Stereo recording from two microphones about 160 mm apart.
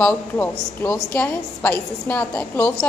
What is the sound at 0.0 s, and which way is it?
A woman's voice, 5° left (ahead or behind).